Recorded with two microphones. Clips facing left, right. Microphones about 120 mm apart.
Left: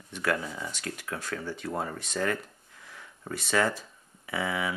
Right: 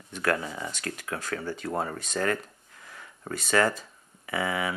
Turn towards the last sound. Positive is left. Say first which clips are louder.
# right 2 dB
turn(degrees=-50)  # may be behind; listen again after turning